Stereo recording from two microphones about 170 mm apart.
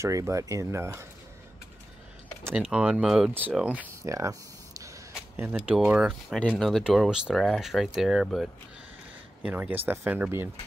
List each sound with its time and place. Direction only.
0.0 s speech: 15° right (ahead or behind)
2.7 s speech: 5° right (ahead or behind)
5.4 s speech: 5° right (ahead or behind)